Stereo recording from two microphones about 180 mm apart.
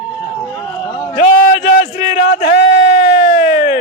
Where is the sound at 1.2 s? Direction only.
45° left (ahead or behind).